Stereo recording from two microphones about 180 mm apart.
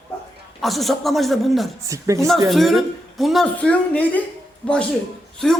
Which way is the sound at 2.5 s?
Centre (ahead or behind).